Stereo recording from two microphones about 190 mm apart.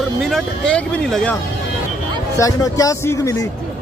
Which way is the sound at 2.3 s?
15° left (ahead or behind).